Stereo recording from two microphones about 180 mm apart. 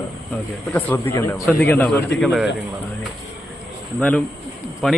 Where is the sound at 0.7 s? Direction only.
10° left (ahead or behind).